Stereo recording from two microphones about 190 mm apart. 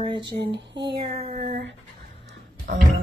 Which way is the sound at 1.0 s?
35° right (ahead or behind).